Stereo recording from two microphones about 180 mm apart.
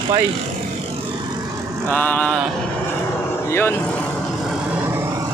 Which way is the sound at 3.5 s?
10° left (ahead or behind).